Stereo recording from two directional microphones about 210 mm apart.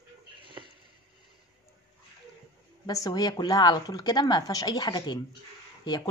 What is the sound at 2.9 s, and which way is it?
A woman's voice, 15° left (ahead or behind).